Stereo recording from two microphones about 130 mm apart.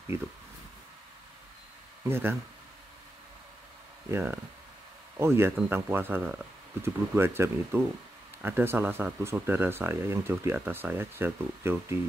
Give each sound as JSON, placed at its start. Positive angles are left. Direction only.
{"t": 2.0, "sound": "speech", "side_deg": -20}
{"t": 4.1, "sound": "speech", "side_deg": -15}